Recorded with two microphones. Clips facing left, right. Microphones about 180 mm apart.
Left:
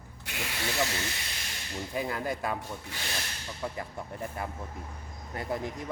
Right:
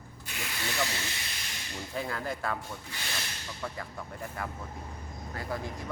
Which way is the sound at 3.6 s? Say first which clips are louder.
Left 3 dB; 20° left (ahead or behind).